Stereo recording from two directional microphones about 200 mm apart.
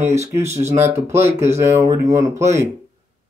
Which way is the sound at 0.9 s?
15° right (ahead or behind).